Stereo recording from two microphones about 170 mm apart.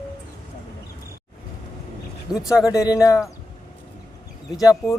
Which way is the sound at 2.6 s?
20° left (ahead or behind).